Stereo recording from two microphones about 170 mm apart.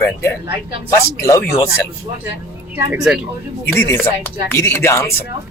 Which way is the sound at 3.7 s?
15° left (ahead or behind).